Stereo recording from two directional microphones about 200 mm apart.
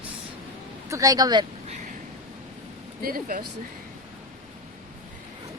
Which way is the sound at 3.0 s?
45° right (ahead or behind).